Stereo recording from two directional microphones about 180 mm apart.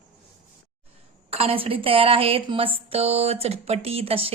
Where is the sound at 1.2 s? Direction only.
30° right (ahead or behind).